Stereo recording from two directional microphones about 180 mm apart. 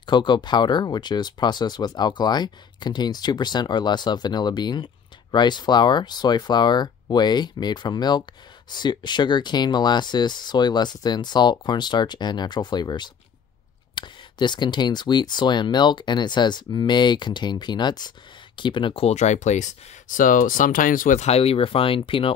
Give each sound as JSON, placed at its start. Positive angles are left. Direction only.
{"t": 0.0, "sound": "speech", "side_deg": 25}